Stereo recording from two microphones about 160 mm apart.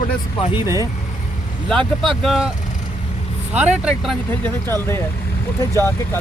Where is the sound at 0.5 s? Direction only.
20° right (ahead or behind).